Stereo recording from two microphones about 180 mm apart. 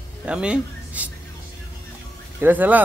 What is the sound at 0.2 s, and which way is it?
Speech, 5° right (ahead or behind).